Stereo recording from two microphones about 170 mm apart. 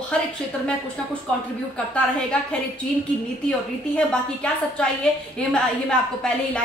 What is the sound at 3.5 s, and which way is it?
A woman's voice, 5° left (ahead or behind).